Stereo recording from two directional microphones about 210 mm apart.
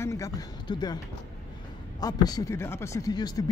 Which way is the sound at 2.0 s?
20° left (ahead or behind).